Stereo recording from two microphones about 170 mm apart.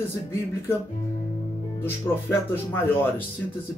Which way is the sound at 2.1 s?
15° left (ahead or behind).